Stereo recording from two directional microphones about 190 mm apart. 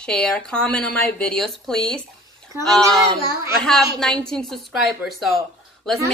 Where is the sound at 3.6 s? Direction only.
Centre (ahead or behind).